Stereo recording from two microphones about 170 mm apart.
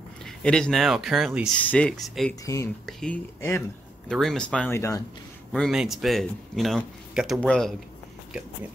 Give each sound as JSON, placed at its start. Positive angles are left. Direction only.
{"t": 0.2, "sound": "speech", "side_deg": 5}
{"t": 2.4, "sound": "speech", "side_deg": 20}
{"t": 2.9, "sound": "speech", "side_deg": 5}
{"t": 3.3, "sound": "speech", "side_deg": 15}
{"t": 4.1, "sound": "speech", "side_deg": 0}
{"t": 5.5, "sound": "speech", "side_deg": 0}